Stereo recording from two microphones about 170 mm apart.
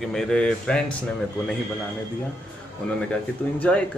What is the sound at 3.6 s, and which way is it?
Speech, 10° left (ahead or behind).